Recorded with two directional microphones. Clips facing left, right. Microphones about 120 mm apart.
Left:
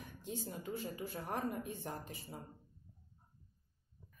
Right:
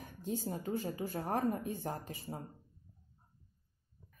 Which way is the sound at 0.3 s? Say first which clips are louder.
Right 6 dB; 40° right (ahead or behind).